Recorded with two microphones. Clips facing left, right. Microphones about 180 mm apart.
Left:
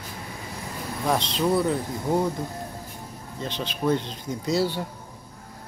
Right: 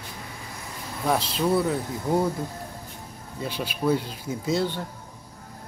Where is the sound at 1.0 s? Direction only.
5° right (ahead or behind).